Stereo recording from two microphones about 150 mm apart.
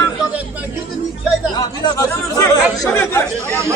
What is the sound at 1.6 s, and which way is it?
Speech, 25° left (ahead or behind).